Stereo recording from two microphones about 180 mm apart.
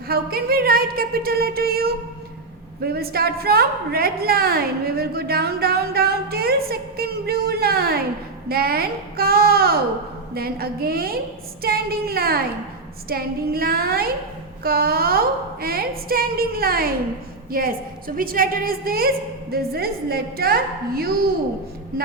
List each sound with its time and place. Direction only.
0.1 s a woman's voice: 60° right (ahead or behind)